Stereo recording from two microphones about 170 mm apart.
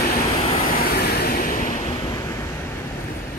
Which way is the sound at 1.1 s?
65° left (ahead or behind).